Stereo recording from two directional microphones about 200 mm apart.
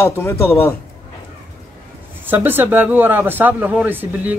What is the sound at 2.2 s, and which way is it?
Speech, 10° right (ahead or behind).